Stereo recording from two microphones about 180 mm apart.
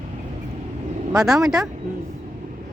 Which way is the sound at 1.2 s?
Centre (ahead or behind).